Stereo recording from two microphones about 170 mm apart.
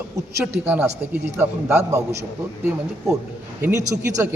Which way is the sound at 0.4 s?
5° right (ahead or behind).